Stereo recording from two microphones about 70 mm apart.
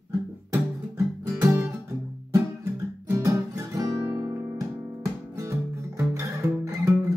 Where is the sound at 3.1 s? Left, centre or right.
Right.